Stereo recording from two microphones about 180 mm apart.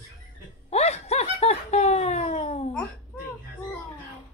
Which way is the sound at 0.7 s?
35° left (ahead or behind).